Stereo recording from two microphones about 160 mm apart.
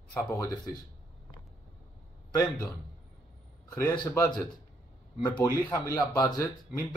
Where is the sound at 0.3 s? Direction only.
20° left (ahead or behind).